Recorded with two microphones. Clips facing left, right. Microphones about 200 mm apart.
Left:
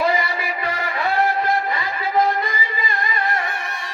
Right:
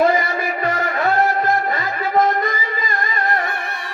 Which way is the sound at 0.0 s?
50° right (ahead or behind).